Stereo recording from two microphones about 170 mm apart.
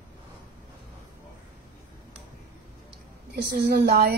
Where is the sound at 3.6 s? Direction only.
70° right (ahead or behind).